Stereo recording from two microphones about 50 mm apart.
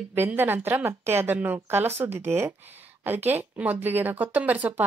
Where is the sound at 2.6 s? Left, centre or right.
Right.